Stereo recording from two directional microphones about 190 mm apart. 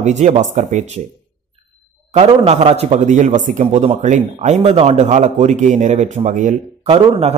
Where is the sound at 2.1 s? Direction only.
30° right (ahead or behind).